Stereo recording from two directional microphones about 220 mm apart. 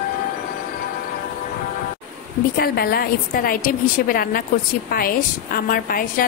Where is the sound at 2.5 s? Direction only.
45° left (ahead or behind).